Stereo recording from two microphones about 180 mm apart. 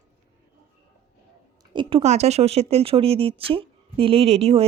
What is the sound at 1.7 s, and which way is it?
Speech, 35° right (ahead or behind).